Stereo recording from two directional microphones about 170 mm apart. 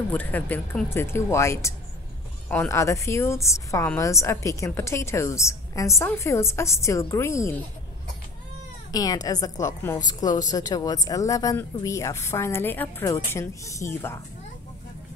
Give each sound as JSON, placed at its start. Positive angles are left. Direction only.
{"t": 0.1, "sound": "a woman's voice", "side_deg": 10}
{"t": 8.9, "sound": "a woman's voice", "side_deg": 20}